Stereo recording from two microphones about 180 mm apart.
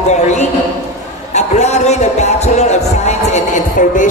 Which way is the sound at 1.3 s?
40° left (ahead or behind).